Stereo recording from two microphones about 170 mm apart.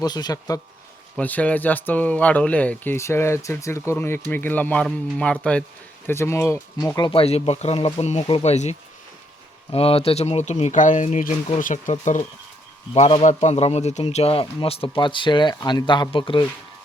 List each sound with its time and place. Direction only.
0.0 s speech: 25° left (ahead or behind)
1.1 s speech: 10° left (ahead or behind)
7.1 s a man's voice: 35° left (ahead or behind)
9.7 s a man's voice: 35° left (ahead or behind)
12.9 s a man's voice: 35° left (ahead or behind)